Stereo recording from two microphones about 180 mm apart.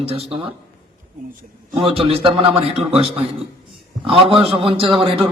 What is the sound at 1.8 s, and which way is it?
A man's voice, 30° right (ahead or behind).